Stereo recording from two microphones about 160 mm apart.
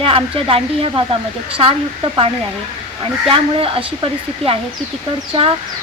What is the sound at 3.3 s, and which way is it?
Speech, 35° right (ahead or behind).